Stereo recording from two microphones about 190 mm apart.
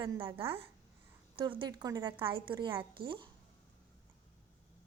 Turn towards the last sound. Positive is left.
turn(degrees=-25)  # may be behind; listen again after turning